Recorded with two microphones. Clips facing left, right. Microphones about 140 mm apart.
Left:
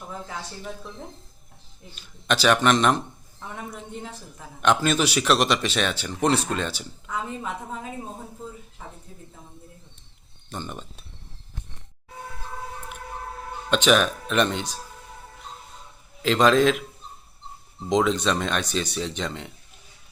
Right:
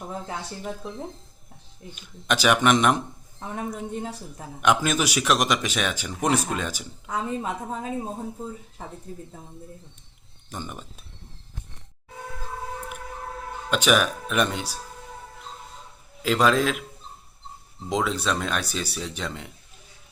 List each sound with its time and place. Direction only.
0.3 s speech: 20° right (ahead or behind)
1.9 s a man's voice: 15° right (ahead or behind)
3.4 s speech: 40° right (ahead or behind)
4.6 s a man's voice: 10° right (ahead or behind)
7.1 s speech: 35° right (ahead or behind)
10.5 s a man's voice: 10° right (ahead or behind)
13.7 s a man's voice: 10° right (ahead or behind)
16.2 s speech: 5° right (ahead or behind)
17.8 s speech: 5° right (ahead or behind)